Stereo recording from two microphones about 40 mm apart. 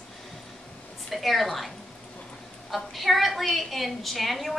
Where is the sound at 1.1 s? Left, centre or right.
Centre.